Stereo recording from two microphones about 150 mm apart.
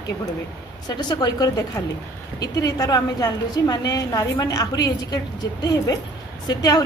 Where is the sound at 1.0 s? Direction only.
30° left (ahead or behind).